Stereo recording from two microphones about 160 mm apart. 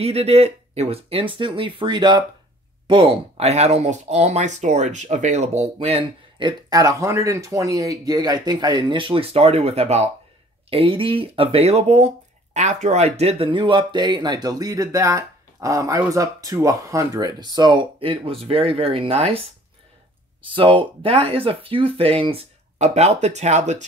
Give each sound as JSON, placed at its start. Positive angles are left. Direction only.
{"t": 0.0, "sound": "speech", "side_deg": -40}
{"t": 20.4, "sound": "speech", "side_deg": -30}